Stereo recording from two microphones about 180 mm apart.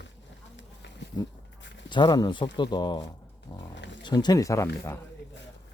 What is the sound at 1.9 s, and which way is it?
Speech, 25° left (ahead or behind).